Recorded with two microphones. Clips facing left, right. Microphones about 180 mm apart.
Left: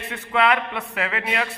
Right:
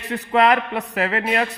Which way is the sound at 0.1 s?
35° right (ahead or behind).